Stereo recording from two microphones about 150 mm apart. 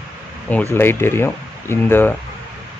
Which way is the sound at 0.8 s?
15° left (ahead or behind).